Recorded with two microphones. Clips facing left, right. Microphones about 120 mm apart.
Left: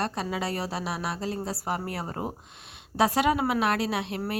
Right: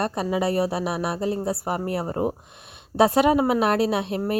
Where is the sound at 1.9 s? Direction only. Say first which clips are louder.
Right 8 dB; 20° right (ahead or behind).